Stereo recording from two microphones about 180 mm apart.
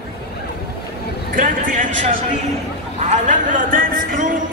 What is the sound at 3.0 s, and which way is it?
Speech, 45° right (ahead or behind).